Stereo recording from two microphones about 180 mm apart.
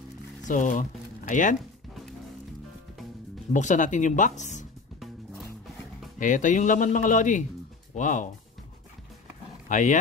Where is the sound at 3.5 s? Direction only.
45° left (ahead or behind).